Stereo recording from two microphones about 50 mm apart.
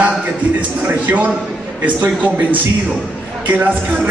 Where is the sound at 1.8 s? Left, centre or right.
Right.